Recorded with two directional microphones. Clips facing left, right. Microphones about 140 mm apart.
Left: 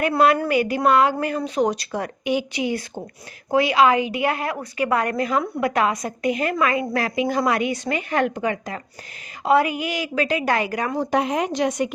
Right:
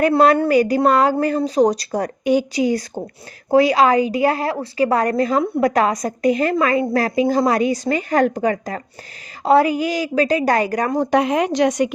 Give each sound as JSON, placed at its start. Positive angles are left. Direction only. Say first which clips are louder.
{"t": 0.0, "sound": "a woman's voice", "louder": "right 4 dB", "side_deg": -35}
{"t": 11.0, "sound": "a woman's voice", "louder": "right 4 dB", "side_deg": -85}